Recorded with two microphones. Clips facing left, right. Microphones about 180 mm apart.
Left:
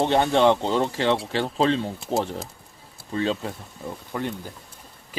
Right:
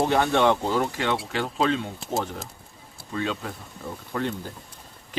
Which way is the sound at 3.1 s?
30° left (ahead or behind).